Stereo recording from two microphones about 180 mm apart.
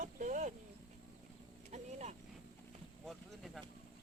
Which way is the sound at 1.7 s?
40° right (ahead or behind).